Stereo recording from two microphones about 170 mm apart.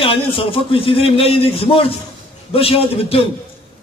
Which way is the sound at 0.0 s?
30° left (ahead or behind).